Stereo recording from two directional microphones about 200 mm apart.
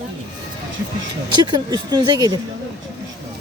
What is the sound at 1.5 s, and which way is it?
Speech, 20° right (ahead or behind).